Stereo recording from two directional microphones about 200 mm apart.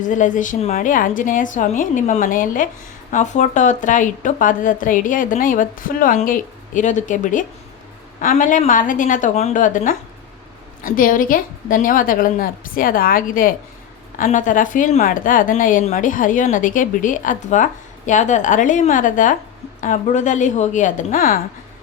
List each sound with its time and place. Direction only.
0.0 s a woman's voice: 40° left (ahead or behind)